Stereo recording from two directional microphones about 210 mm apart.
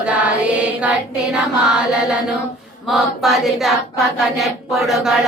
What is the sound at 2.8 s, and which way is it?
Chant, centre (ahead or behind).